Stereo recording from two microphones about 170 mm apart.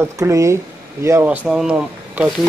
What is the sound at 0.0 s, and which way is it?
A man's voice, 20° right (ahead or behind).